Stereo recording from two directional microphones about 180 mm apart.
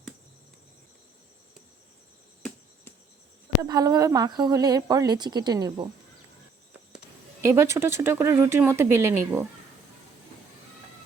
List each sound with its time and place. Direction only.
3.6 s a woman's voice: 20° right (ahead or behind)
7.4 s speech: 15° right (ahead or behind)